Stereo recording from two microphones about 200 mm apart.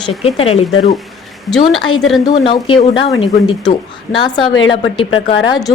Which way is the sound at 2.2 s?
25° left (ahead or behind).